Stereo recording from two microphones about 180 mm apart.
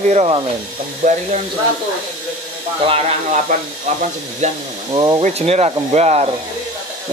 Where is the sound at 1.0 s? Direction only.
50° right (ahead or behind).